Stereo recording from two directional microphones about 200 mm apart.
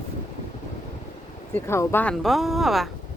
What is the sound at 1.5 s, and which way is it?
Speech, 10° left (ahead or behind).